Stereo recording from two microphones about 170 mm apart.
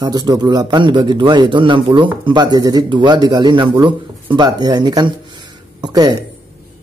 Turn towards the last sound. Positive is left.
turn(degrees=-25)  # may be behind; listen again after turning